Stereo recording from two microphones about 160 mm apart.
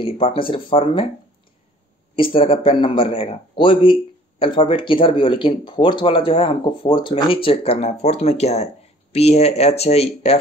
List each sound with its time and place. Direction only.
0.0 s speech: 35° left (ahead or behind)
2.1 s speech: 35° left (ahead or behind)